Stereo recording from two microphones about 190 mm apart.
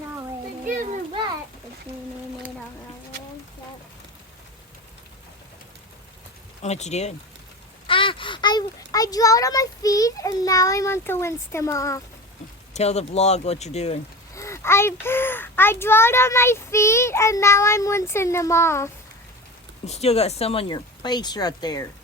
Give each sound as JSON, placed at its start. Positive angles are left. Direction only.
{"t": 0.6, "sound": "a sound", "side_deg": -45}
{"t": 6.6, "sound": "a child's voice", "side_deg": 35}
{"t": 12.7, "sound": "speech", "side_deg": 35}
{"t": 14.3, "sound": "a child's voice", "side_deg": 15}
{"t": 19.8, "sound": "speech", "side_deg": 35}